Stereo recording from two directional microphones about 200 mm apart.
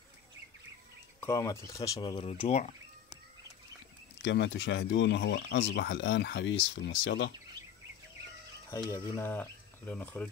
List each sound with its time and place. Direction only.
1.2 s speech: 15° left (ahead or behind); by 2.7 s 30° left (ahead or behind)
4.2 s speech: 60° left (ahead or behind)
8.9 s speech: 10° left (ahead or behind)